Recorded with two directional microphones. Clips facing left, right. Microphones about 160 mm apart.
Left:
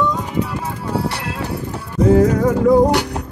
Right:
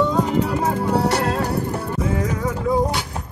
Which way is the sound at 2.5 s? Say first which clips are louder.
Left 8 dB; 60° left (ahead or behind).